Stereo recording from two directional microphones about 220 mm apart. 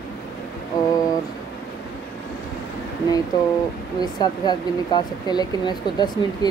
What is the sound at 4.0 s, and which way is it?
Speech, 20° left (ahead or behind).